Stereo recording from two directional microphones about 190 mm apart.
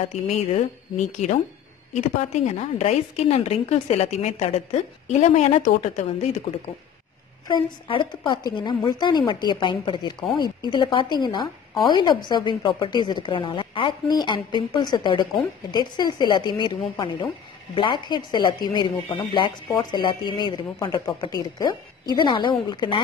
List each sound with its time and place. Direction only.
0.3 s a woman's voice: 35° left (ahead or behind)
7.4 s a woman's voice: 25° left (ahead or behind)